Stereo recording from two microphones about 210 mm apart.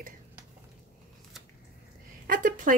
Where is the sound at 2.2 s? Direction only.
40° right (ahead or behind).